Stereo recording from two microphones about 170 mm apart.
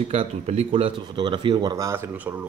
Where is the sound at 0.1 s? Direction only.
35° right (ahead or behind).